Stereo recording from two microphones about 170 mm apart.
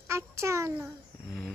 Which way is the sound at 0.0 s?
15° right (ahead or behind).